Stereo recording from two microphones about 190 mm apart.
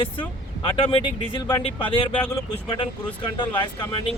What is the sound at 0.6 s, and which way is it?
Speech, 25° left (ahead or behind).